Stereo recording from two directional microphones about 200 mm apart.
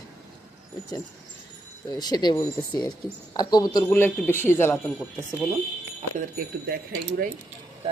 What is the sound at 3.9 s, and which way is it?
Speech, 10° left (ahead or behind).